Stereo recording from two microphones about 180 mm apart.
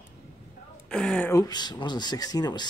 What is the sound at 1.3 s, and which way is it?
Speech, 20° left (ahead or behind).